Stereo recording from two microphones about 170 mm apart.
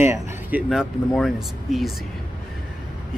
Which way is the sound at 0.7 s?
Centre (ahead or behind).